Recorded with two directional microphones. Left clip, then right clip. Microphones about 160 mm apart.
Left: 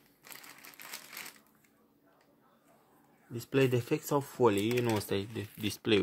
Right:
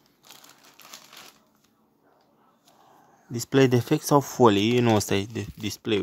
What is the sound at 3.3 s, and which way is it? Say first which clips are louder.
Speech: right 8 dB; 55° right (ahead or behind).